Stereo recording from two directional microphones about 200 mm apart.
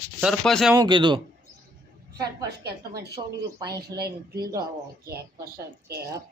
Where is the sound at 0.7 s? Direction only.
20° right (ahead or behind).